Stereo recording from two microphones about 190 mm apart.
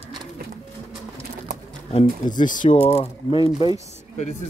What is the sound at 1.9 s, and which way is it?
Speech, 35° left (ahead or behind).